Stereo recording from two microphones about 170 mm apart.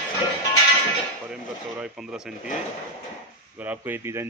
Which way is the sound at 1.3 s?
5° right (ahead or behind).